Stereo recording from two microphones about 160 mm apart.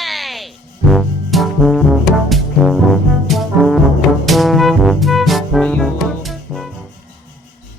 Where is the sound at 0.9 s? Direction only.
Centre (ahead or behind).